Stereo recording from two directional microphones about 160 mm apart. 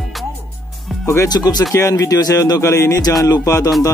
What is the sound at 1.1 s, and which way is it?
Speech, 20° left (ahead or behind).